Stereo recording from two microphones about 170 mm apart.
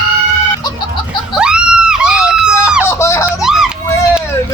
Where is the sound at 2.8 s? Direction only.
15° left (ahead or behind).